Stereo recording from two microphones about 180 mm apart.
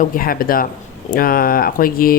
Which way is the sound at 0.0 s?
55° left (ahead or behind).